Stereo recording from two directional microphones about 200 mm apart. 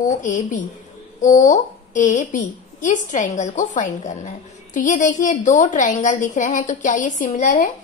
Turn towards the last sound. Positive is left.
turn(degrees=40)  # may be behind; listen again after turning